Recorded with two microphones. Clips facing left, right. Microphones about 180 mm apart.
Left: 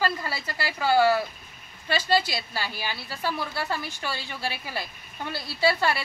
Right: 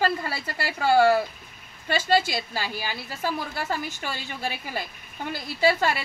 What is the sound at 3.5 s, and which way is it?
Speech, 20° right (ahead or behind).